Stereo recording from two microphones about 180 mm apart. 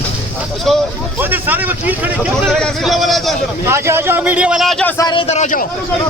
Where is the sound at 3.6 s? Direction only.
15° right (ahead or behind); by 4.9 s 5° left (ahead or behind).